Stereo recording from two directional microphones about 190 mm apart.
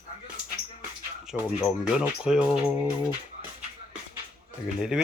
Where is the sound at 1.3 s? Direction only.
5° right (ahead or behind).